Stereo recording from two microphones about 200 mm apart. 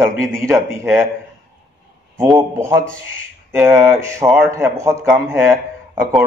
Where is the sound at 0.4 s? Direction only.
10° right (ahead or behind).